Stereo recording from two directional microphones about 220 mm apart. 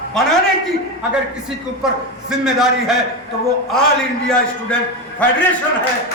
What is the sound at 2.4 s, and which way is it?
Speech, centre (ahead or behind).